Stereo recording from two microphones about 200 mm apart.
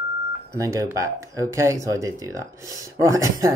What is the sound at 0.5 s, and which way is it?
Speech, 15° right (ahead or behind).